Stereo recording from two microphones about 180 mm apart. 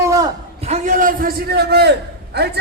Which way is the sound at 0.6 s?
40° right (ahead or behind).